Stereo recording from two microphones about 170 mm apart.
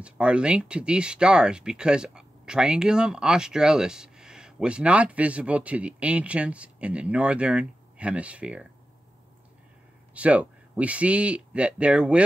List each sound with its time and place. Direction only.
0.0 s speech: 5° right (ahead or behind)
10.1 s speech: 5° right (ahead or behind)